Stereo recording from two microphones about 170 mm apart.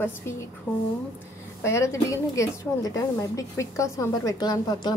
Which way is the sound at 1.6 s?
15° left (ahead or behind).